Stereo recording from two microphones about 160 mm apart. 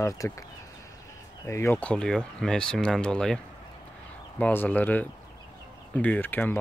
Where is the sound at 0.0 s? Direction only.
20° left (ahead or behind).